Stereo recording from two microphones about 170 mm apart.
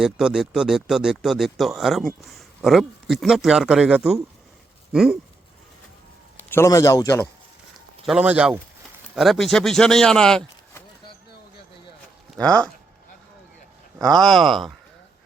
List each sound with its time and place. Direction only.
0.0 s speech: 5° right (ahead or behind)
4.9 s a sound: centre (ahead or behind)
6.5 s a man's voice: 15° left (ahead or behind)
8.0 s speech: 5° right (ahead or behind)
12.3 s speech: 5° left (ahead or behind)
14.2 s speech: centre (ahead or behind)